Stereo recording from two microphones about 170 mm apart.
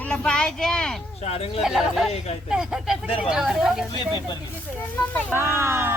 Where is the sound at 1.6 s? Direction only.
5° right (ahead or behind).